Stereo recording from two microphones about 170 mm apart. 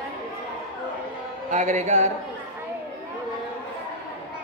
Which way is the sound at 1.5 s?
45° right (ahead or behind).